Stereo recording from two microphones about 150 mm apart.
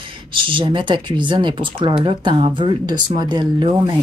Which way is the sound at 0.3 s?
35° right (ahead or behind).